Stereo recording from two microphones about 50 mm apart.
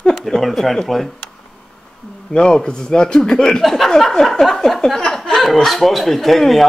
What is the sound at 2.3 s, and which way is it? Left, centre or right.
A man's voice, centre.